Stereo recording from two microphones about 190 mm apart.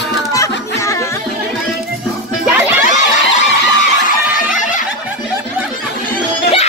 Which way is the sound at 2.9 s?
40° left (ahead or behind).